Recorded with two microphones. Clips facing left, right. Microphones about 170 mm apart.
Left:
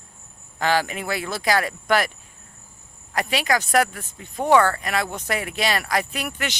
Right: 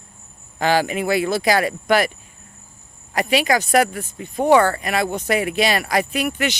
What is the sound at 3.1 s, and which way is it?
Speech, 10° right (ahead or behind).